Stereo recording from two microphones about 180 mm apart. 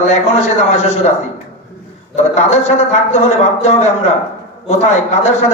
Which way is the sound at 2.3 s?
40° left (ahead or behind).